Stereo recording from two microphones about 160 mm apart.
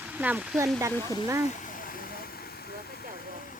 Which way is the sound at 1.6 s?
60° left (ahead or behind).